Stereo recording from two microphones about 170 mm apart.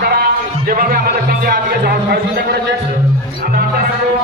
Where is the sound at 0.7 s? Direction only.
60° right (ahead or behind).